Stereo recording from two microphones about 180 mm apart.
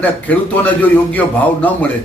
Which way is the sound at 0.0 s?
10° left (ahead or behind).